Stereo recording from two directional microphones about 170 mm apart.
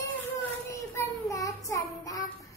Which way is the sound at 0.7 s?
15° left (ahead or behind).